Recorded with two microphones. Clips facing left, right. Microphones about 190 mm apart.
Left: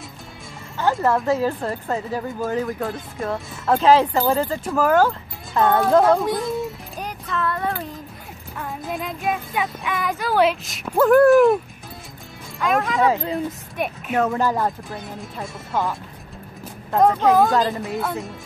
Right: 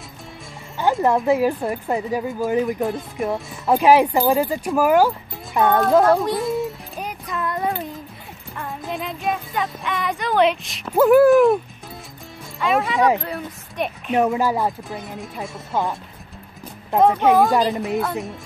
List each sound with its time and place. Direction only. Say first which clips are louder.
0.7 s speech: right 1 dB; 15° right (ahead or behind)
5.8 s speech: even; centre (ahead or behind)
7.2 s a sound: even; 15° right (ahead or behind)
8.5 s speech: even; centre (ahead or behind)
12.5 s a woman's voice: right 1 dB; centre (ahead or behind)
14.1 s speech: right 2 dB; 15° right (ahead or behind)
17.1 s speech: right 1 dB; 15° right (ahead or behind)